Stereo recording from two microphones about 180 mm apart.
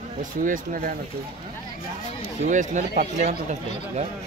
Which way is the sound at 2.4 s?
40° right (ahead or behind).